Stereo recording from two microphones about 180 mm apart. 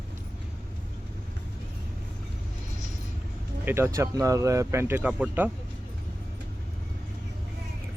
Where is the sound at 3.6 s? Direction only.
15° right (ahead or behind).